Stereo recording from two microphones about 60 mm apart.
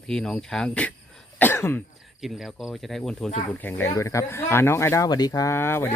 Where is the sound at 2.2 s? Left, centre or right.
Centre.